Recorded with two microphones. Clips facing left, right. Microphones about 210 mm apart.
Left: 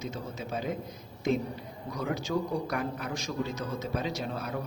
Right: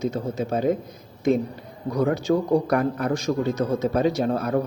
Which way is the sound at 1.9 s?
55° right (ahead or behind).